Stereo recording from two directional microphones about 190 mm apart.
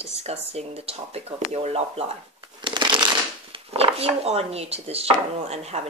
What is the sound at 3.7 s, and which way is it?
Chopping, 30° right (ahead or behind).